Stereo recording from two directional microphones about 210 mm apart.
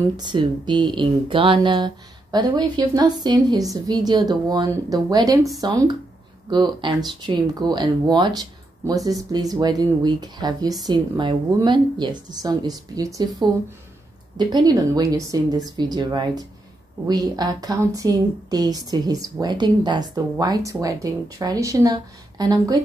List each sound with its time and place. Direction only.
0.2 s speech: 20° right (ahead or behind)